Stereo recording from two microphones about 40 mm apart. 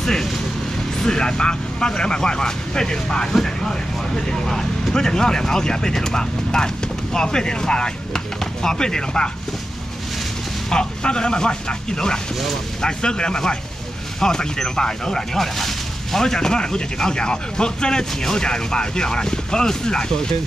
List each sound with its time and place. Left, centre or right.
0.0 s speech: centre
4.3 s speech: centre
10.7 s speech: left
16.3 s speech: centre